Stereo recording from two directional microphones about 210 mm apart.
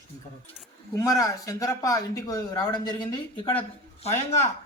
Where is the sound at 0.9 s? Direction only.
15° left (ahead or behind).